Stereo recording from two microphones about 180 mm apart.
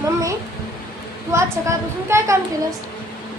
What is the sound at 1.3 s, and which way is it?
A woman's voice, 15° right (ahead or behind).